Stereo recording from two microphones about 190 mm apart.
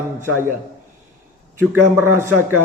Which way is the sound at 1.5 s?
15° right (ahead or behind).